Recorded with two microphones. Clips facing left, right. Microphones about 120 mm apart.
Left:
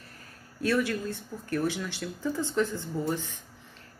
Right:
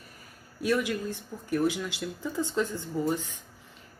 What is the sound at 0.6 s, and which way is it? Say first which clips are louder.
Speech: even; 15° right (ahead or behind).